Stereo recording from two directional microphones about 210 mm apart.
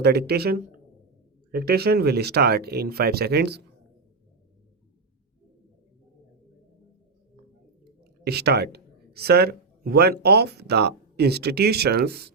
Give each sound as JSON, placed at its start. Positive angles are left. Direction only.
{"t": 0.0, "sound": "speech", "side_deg": -50}
{"t": 8.2, "sound": "speech", "side_deg": -50}